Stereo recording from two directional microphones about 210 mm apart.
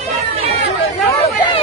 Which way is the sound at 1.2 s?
25° left (ahead or behind).